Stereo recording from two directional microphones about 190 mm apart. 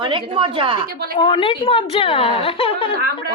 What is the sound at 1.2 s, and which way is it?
Speech, 25° left (ahead or behind).